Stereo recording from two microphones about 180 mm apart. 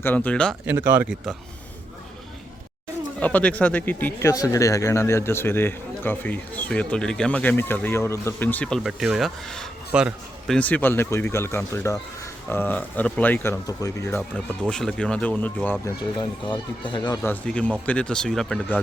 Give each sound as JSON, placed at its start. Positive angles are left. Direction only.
{"t": 0.0, "sound": "speech", "side_deg": 10}
{"t": 0.7, "sound": "speech", "side_deg": -10}
{"t": 3.2, "sound": "speech", "side_deg": 10}
{"t": 14.7, "sound": "speech", "side_deg": 5}
{"t": 16.5, "sound": "speech", "side_deg": 25}
{"t": 17.2, "sound": "speech", "side_deg": 5}